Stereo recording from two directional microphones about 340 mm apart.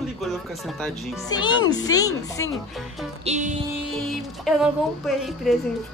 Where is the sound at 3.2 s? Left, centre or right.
Right.